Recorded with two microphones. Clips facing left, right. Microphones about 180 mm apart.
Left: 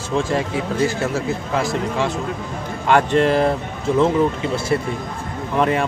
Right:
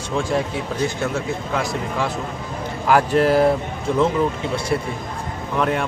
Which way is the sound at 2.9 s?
5° right (ahead or behind).